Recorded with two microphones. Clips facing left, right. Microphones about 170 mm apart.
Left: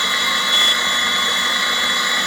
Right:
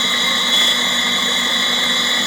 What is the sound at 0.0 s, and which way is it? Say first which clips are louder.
Helicopter: right 2 dB; 25° right (ahead or behind).